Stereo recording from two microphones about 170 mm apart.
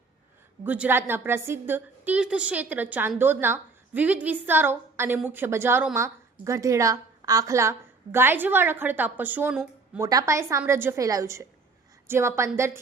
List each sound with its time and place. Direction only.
0.6 s a woman's voice: 10° right (ahead or behind)